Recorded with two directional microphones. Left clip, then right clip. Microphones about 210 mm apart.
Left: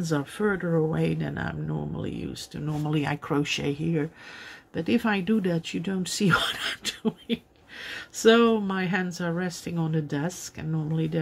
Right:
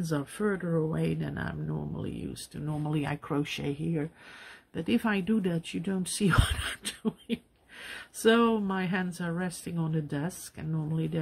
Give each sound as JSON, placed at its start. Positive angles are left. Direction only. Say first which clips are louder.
{"t": 0.0, "sound": "speech", "louder": "left 4 dB", "side_deg": 0}